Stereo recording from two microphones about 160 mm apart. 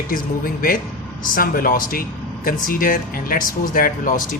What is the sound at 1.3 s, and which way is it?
Speech, 60° left (ahead or behind).